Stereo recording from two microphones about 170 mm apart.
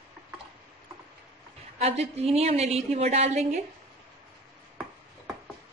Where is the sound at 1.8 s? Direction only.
40° right (ahead or behind).